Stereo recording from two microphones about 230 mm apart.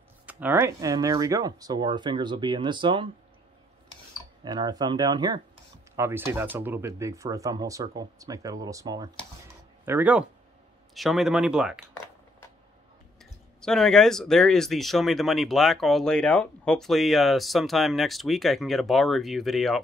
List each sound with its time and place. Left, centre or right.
0.3 s speech: centre
4.5 s speech: centre
13.2 s speech: centre